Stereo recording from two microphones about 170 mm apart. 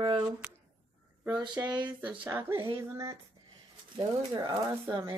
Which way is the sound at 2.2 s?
15° right (ahead or behind).